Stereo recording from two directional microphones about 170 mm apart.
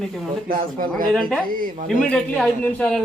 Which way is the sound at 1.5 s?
55° right (ahead or behind).